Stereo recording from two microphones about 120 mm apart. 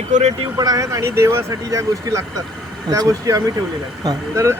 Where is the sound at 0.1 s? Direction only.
65° right (ahead or behind).